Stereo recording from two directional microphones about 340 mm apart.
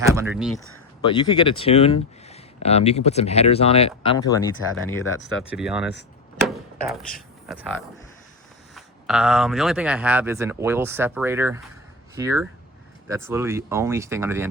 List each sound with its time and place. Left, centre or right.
0.0 s speech: centre
1.1 s speech: centre
5.5 s speech: centre
6.5 s a sound: centre
7.4 s speech: centre